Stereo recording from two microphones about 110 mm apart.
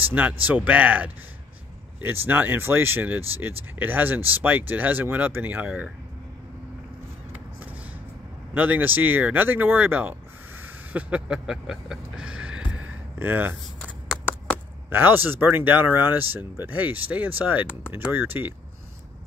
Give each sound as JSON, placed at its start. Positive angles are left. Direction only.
{"t": 0.1, "sound": "speech", "side_deg": -15}
{"t": 8.5, "sound": "speech", "side_deg": -15}
{"t": 10.6, "sound": "music", "side_deg": -15}
{"t": 14.9, "sound": "speech", "side_deg": -20}